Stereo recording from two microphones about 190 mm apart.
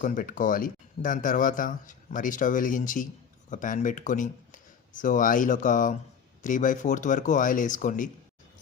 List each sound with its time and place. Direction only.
0.0 s speech: 45° left (ahead or behind)